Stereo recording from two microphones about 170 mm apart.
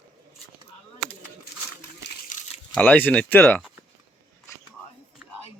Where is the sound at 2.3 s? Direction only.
45° left (ahead or behind).